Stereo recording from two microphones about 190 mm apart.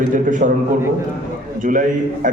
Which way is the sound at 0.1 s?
45° right (ahead or behind).